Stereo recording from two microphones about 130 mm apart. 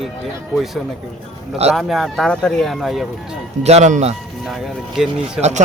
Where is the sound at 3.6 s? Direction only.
60° right (ahead or behind).